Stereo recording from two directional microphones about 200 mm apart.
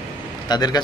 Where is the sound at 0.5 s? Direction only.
20° left (ahead or behind).